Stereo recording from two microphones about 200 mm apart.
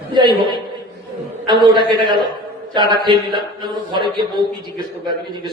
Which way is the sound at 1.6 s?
20° right (ahead or behind).